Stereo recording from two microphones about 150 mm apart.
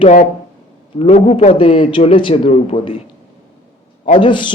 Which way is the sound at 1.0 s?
50° left (ahead or behind).